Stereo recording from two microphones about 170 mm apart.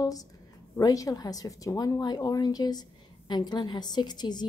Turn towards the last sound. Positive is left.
turn(degrees=25)  # may be behind; listen again after turning